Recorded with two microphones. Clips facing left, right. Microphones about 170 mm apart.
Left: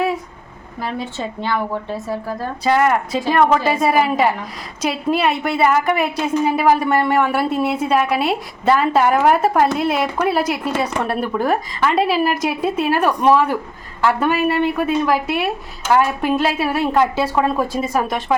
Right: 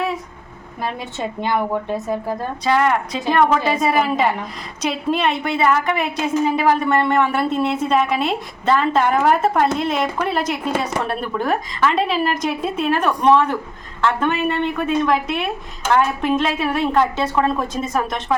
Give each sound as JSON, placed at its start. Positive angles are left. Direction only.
{"t": 0.8, "sound": "speech", "side_deg": -20}
{"t": 2.6, "sound": "a woman's voice", "side_deg": 5}